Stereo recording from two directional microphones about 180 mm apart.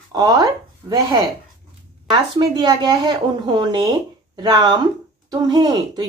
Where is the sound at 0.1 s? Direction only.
20° right (ahead or behind).